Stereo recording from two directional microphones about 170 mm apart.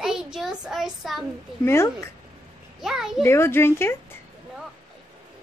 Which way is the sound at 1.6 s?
15° left (ahead or behind).